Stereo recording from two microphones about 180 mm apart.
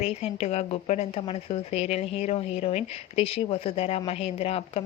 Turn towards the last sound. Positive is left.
turn(degrees=35)  # may be behind; listen again after turning